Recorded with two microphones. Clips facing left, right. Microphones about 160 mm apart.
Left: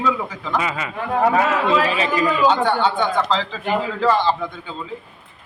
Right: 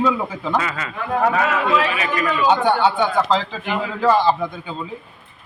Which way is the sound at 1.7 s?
35° left (ahead or behind).